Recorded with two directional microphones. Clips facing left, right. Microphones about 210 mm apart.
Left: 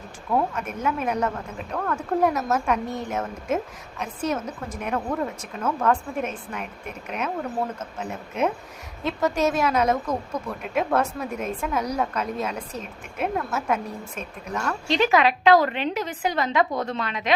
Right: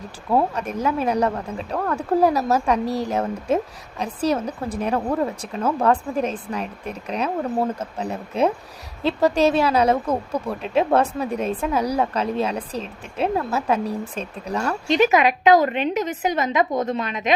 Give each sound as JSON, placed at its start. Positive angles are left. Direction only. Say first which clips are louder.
{"t": 0.3, "sound": "speech", "louder": "right 4 dB", "side_deg": -35}
{"t": 14.8, "sound": "a woman's voice", "louder": "right 3 dB", "side_deg": -20}